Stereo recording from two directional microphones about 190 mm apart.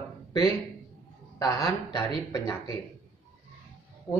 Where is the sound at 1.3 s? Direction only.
20° left (ahead or behind).